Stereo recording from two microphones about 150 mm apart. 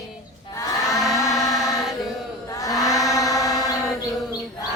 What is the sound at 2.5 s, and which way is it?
Chant, 20° left (ahead or behind).